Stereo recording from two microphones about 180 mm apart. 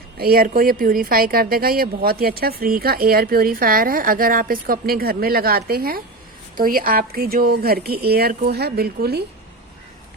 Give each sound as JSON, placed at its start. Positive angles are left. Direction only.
{"t": 0.2, "sound": "speech", "side_deg": -55}